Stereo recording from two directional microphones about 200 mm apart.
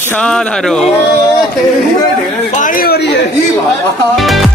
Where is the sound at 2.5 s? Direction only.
45° left (ahead or behind).